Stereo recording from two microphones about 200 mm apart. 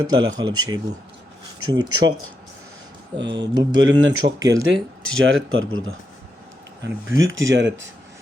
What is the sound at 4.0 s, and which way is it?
Speech, 80° right.